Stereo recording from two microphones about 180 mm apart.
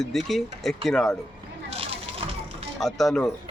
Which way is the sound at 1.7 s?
35° right (ahead or behind).